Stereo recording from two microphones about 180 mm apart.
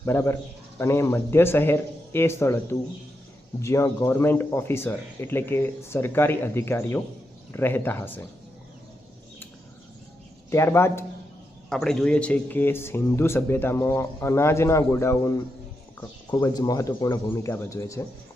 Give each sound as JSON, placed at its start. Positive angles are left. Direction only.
{"t": 0.0, "sound": "speech", "side_deg": 15}
{"t": 10.5, "sound": "speech", "side_deg": 15}
{"t": 11.7, "sound": "speech", "side_deg": 0}